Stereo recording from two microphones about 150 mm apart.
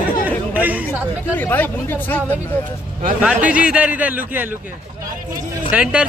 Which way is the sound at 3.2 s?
10° right (ahead or behind).